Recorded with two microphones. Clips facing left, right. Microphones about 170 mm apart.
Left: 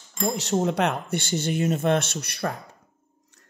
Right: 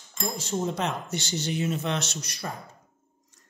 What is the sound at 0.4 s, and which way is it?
Speech, 70° left (ahead or behind).